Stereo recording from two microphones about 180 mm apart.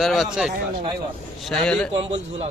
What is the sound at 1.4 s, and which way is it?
Speech, 5° left (ahead or behind).